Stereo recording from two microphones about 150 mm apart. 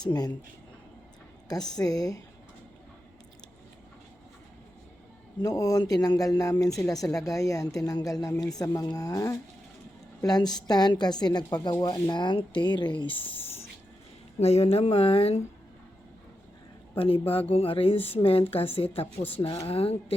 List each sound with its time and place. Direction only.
0.0 s speech: 25° left (ahead or behind)
1.5 s speech: 25° left (ahead or behind)
5.4 s speech: 25° left (ahead or behind); by 15.4 s 40° left (ahead or behind)
17.0 s speech: 40° left (ahead or behind)